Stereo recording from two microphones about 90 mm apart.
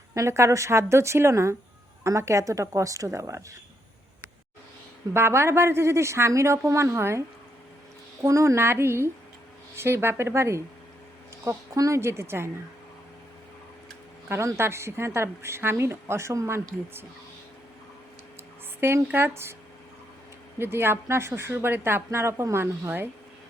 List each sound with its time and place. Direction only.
0.1 s a woman's voice: 35° right (ahead or behind)
5.1 s a woman's voice: 30° right (ahead or behind)
8.2 s a woman's voice: 35° right (ahead or behind)
14.3 s a woman's voice: 30° right (ahead or behind)
18.8 s a woman's voice: 25° right (ahead or behind)
20.6 s a woman's voice: 25° right (ahead or behind)